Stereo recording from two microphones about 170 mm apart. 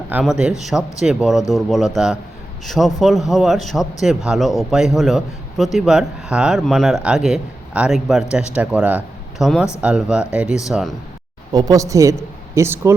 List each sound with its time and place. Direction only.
0.1 s a man's voice: 5° right (ahead or behind)
11.5 s a woman's voice: 20° right (ahead or behind)